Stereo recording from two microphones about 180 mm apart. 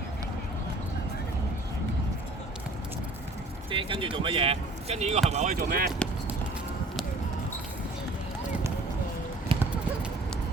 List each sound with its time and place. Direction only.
3.7 s speech: 30° right (ahead or behind)
5.5 s speech: 60° right (ahead or behind)
9.5 s clip-clop: 30° right (ahead or behind)